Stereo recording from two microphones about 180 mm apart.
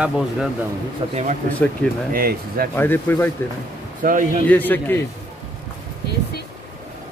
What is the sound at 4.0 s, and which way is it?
Speech, 50° right (ahead or behind).